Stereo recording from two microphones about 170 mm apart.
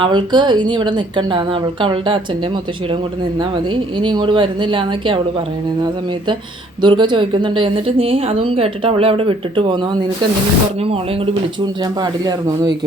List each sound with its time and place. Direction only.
0.0 s speech: 25° right (ahead or behind)
3.9 s speech: 30° right (ahead or behind)
6.8 s a woman's voice: 30° right (ahead or behind)